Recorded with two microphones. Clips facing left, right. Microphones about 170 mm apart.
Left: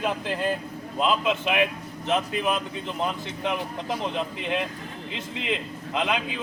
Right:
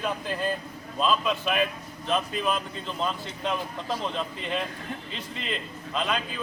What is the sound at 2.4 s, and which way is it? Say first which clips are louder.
A man's voice: left 2 dB; 15° left (ahead or behind).